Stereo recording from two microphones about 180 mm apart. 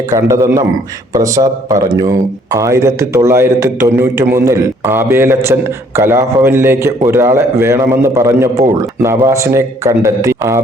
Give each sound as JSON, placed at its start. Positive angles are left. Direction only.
{"t": 0.1, "sound": "speech", "side_deg": -15}